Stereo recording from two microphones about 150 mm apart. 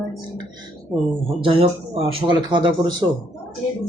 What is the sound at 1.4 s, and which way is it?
Speech, 35° right (ahead or behind).